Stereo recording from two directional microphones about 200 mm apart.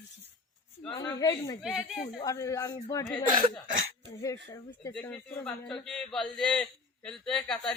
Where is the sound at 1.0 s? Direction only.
15° left (ahead or behind).